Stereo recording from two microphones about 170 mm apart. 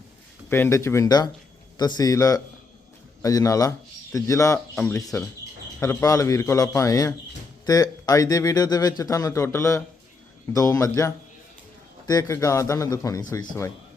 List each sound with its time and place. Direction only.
0.5 s a man's voice: 15° left (ahead or behind)
4.7 s speech: 5° left (ahead or behind)
4.9 s speech: 20° left (ahead or behind)